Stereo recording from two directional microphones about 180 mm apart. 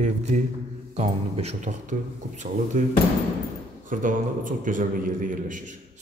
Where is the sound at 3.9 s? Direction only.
50° right (ahead or behind).